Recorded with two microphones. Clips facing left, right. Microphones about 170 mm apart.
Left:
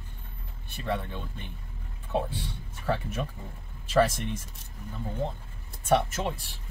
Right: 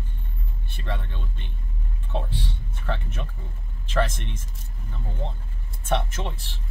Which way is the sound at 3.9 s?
10° left (ahead or behind).